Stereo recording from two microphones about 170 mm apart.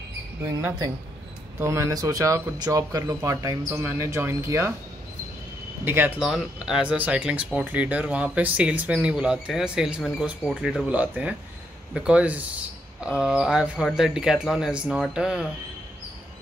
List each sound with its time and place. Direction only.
0.6 s speech: 15° right (ahead or behind)
5.9 s speech: 10° right (ahead or behind)